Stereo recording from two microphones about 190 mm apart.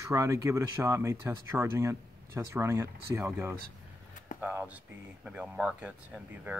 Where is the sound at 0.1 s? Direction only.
15° right (ahead or behind).